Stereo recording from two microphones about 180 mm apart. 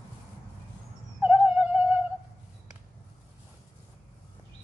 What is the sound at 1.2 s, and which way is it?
Music, 10° right (ahead or behind).